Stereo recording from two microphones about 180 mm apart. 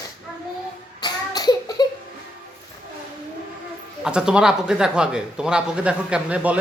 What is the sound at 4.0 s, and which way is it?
Speech, 5° right (ahead or behind).